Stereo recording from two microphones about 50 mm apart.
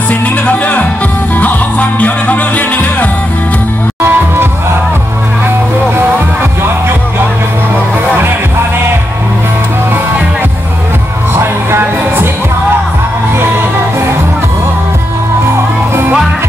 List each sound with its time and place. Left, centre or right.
0.1 s music: left
4.0 s music: right